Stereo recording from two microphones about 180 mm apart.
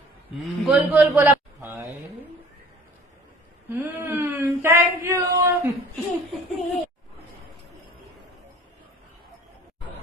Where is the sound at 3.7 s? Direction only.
10° right (ahead or behind).